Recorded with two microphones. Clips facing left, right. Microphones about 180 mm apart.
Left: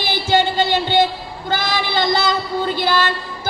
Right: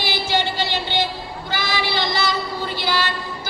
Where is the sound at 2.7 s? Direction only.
50° left (ahead or behind).